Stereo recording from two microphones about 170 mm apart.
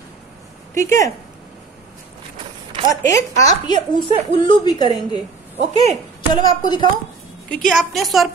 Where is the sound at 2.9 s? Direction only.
20° left (ahead or behind).